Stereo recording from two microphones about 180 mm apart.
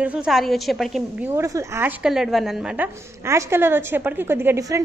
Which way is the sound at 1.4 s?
15° right (ahead or behind).